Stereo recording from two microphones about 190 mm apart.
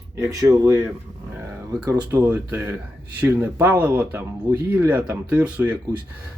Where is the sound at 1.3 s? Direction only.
5° right (ahead or behind).